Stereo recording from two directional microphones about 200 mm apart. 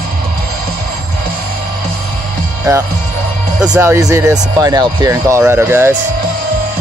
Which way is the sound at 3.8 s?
15° right (ahead or behind).